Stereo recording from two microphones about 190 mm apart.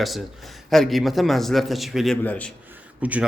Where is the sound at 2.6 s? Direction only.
10° right (ahead or behind).